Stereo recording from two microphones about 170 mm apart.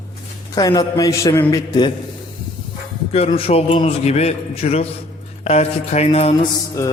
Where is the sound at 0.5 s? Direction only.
20° left (ahead or behind).